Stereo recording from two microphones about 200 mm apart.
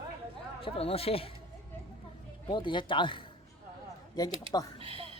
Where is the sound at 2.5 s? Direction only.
25° left (ahead or behind).